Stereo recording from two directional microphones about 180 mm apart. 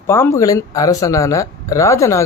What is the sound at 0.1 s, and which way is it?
A man's voice, 15° left (ahead or behind).